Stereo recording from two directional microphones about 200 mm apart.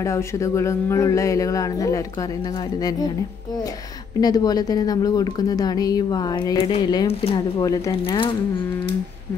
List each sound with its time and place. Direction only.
0.0 s a woman's voice: 15° left (ahead or behind)
4.2 s a woman's voice: 20° left (ahead or behind)
7.6 s speech: 15° left (ahead or behind)
7.9 s a woman's voice: 25° left (ahead or behind)